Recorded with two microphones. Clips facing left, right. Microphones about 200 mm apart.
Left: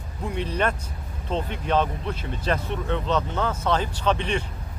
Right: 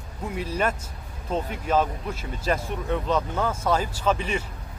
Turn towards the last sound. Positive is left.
turn(degrees=-5)  # may be behind; listen again after turning